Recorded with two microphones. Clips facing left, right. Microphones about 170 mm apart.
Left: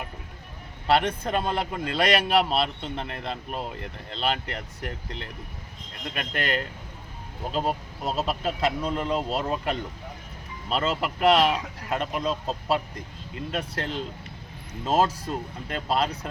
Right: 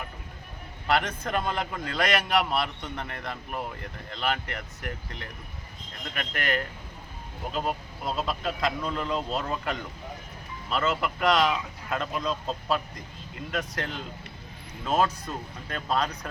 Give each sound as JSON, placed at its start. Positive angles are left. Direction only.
{"t": 0.9, "sound": "speech", "side_deg": 30}
{"t": 6.1, "sound": "speech", "side_deg": 30}